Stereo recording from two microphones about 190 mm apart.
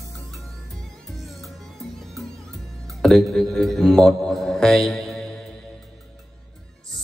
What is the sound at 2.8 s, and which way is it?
Speech, centre (ahead or behind).